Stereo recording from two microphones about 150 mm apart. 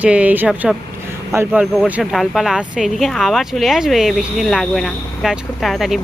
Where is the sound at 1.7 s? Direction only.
Centre (ahead or behind).